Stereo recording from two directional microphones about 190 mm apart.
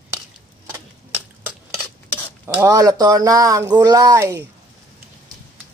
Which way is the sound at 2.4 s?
15° right (ahead or behind).